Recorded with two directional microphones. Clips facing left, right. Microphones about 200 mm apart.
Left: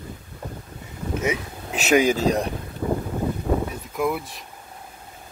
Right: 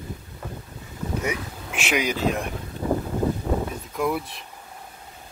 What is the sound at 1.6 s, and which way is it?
Speech, 40° left (ahead or behind).